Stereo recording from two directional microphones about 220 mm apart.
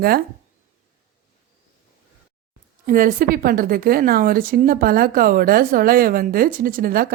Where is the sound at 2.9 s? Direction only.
40° right (ahead or behind).